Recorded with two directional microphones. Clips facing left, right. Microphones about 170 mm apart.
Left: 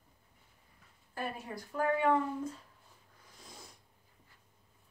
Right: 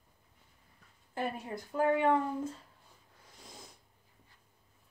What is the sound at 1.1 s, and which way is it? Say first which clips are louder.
A woman's voice: right 3 dB; 25° right (ahead or behind).